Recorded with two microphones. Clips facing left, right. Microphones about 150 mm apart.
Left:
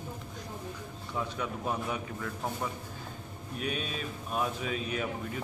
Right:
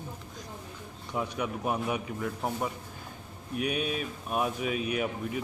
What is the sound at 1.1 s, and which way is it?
Speech, 15° right (ahead or behind).